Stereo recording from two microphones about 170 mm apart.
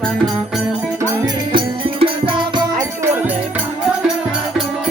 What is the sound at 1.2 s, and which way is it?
Music, 30° right (ahead or behind).